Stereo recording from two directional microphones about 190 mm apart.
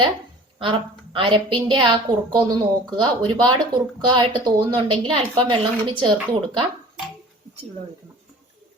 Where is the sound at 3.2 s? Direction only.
25° right (ahead or behind).